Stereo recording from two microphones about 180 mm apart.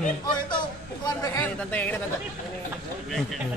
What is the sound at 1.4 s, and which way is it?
Speech, 10° left (ahead or behind).